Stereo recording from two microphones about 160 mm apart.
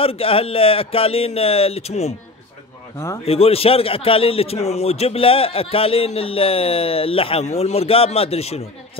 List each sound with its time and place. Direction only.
0.0 s a man's voice: 35° left (ahead or behind)
3.3 s a man's voice: 40° left (ahead or behind)